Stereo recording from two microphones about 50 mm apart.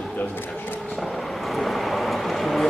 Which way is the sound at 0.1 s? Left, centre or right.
Left.